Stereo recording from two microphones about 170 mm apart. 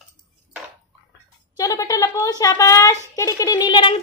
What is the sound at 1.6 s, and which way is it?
Speech, 20° left (ahead or behind).